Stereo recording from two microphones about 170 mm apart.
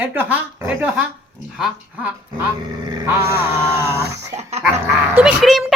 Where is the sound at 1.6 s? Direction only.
5° right (ahead or behind).